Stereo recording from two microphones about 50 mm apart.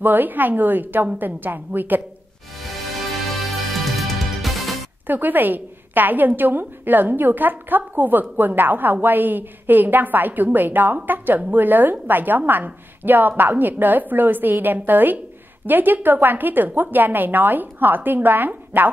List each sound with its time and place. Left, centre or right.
0.0 s a woman's voice: right
3.8 s music: centre
5.0 s a woman's voice: right